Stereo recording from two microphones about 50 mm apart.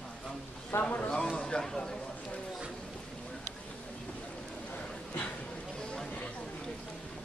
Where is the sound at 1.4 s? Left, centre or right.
Centre.